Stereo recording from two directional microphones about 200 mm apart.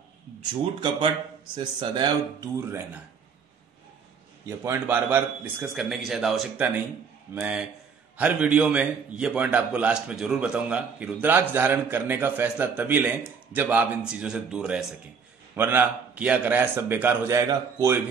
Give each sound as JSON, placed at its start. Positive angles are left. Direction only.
{"t": 0.7, "sound": "speech", "side_deg": -25}
{"t": 4.5, "sound": "a man's voice", "side_deg": -10}